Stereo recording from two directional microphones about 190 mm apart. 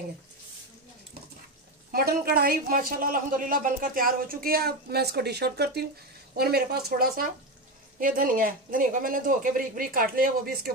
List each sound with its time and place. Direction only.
1.9 s a woman's voice: 50° right (ahead or behind)